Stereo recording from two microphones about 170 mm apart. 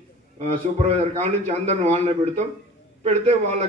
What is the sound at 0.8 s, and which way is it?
A man's voice, 40° right (ahead or behind).